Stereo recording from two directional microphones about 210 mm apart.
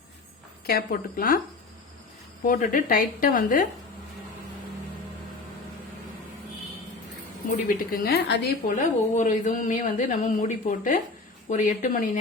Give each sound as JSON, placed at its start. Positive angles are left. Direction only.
{"t": 0.7, "sound": "a woman's voice", "side_deg": 45}
{"t": 2.4, "sound": "speech", "side_deg": 40}
{"t": 7.5, "sound": "speech", "side_deg": 40}